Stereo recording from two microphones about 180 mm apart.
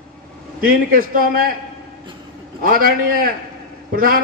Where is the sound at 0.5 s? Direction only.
55° right (ahead or behind).